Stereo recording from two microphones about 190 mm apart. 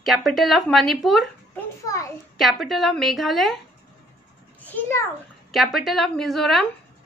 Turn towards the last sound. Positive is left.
turn(degrees=0)  # may be behind; listen again after turning